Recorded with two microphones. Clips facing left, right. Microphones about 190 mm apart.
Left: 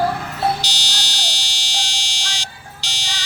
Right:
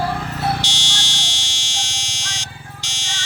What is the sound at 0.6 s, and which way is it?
Buzzer, 35° left (ahead or behind).